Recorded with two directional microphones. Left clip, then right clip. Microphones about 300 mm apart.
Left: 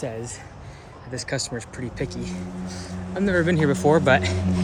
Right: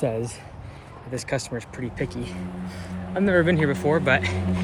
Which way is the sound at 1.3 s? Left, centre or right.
Centre.